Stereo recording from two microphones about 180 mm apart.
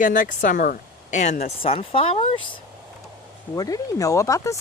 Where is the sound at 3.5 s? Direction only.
20° left (ahead or behind).